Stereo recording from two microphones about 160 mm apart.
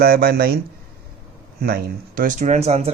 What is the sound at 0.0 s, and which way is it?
Speech, 75° right (ahead or behind).